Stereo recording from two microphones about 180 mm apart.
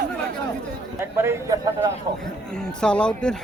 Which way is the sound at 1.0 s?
15° right (ahead or behind).